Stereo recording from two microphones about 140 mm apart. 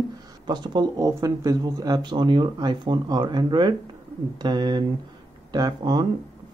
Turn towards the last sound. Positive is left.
turn(degrees=-30)  # may be behind; listen again after turning